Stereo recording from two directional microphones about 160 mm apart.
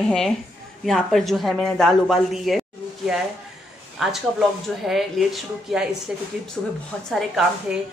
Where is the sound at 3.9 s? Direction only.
Centre (ahead or behind).